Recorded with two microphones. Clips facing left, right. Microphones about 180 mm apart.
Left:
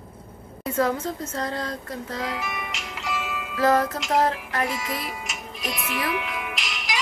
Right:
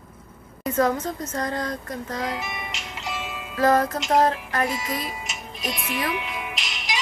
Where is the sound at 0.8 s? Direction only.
15° right (ahead or behind).